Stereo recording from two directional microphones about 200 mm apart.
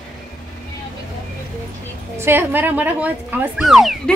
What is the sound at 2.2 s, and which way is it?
Speech, 10° right (ahead or behind).